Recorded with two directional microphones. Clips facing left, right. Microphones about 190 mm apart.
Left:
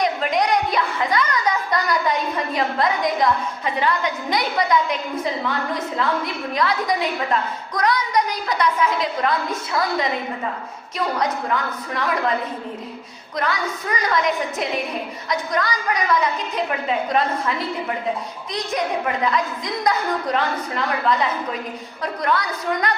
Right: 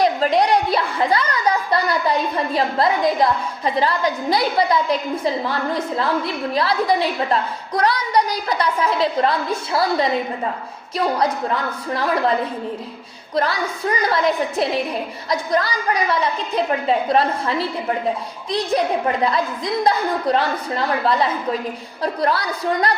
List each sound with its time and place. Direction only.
0.0 s a woman's voice: 35° right (ahead or behind)
13.3 s a woman's voice: 30° right (ahead or behind)